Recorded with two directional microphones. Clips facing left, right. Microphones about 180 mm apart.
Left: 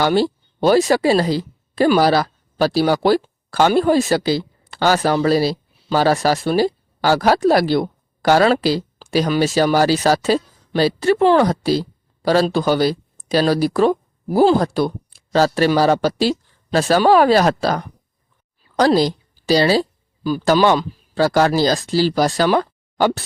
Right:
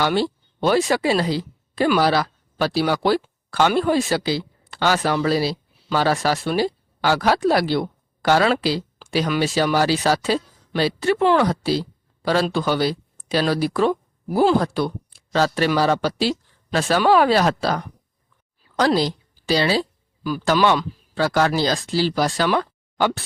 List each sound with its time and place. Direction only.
0.0 s speech: 40° left (ahead or behind)